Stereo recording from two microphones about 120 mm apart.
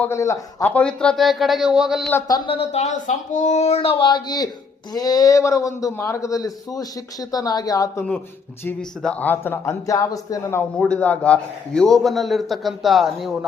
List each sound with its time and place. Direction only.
0.1 s a man's voice: 25° left (ahead or behind); by 2.0 s 5° right (ahead or behind)
2.5 s speech: 60° left (ahead or behind)
3.8 s a man's voice: 45° left (ahead or behind)
9.0 s speech: 10° left (ahead or behind)
9.8 s a man's voice: 30° left (ahead or behind)
10.8 s a man's voice: 10° left (ahead or behind)